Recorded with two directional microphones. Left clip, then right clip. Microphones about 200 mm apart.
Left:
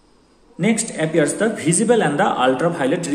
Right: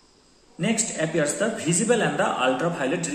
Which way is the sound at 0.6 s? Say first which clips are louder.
Left 5 dB; 35° left (ahead or behind).